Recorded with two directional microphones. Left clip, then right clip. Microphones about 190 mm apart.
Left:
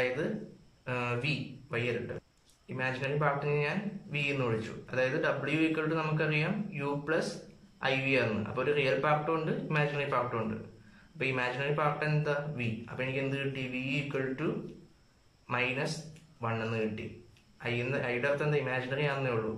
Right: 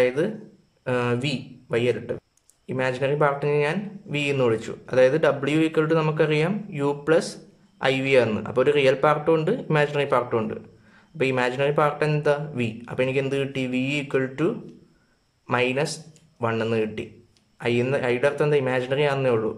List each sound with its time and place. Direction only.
0.2 s speech: 45° right (ahead or behind)